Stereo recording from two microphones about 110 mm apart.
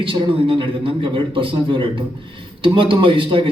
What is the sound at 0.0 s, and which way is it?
A man's voice, 50° right (ahead or behind).